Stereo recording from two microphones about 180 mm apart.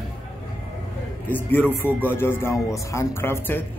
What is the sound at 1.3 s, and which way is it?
Speech, 10° left (ahead or behind).